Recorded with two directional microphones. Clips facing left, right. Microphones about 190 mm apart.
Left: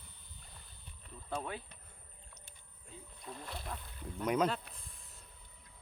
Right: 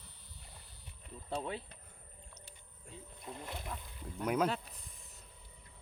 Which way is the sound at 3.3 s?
20° right (ahead or behind).